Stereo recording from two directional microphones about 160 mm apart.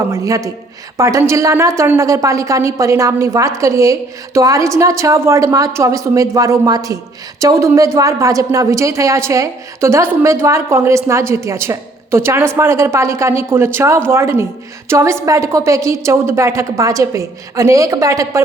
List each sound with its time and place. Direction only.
0.1 s a woman's voice: 20° right (ahead or behind)